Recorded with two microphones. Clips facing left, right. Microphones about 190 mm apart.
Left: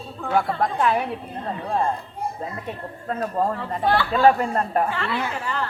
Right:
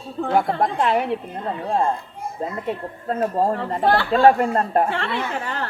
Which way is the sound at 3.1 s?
30° right (ahead or behind).